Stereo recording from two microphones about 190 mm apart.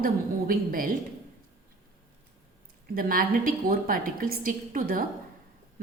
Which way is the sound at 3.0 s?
50° right (ahead or behind).